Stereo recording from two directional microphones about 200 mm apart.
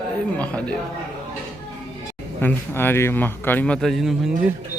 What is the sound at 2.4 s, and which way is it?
A man's voice, 10° left (ahead or behind).